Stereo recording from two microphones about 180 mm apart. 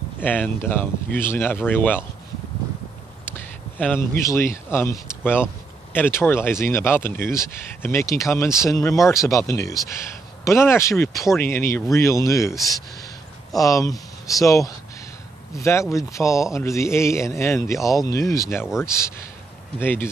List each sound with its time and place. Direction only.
0.2 s speech: 10° left (ahead or behind)
3.8 s speech: 10° left (ahead or behind)
13.6 s speech: 20° left (ahead or behind)